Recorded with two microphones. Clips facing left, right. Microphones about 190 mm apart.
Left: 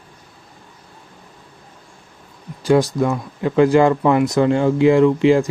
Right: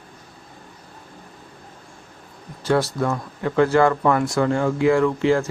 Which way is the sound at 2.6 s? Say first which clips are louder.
Left 5 dB; 15° left (ahead or behind).